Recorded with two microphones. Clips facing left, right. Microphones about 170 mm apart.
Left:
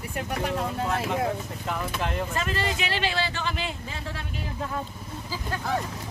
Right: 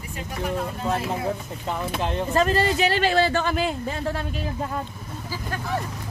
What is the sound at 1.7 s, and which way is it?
Speech, 30° right (ahead or behind).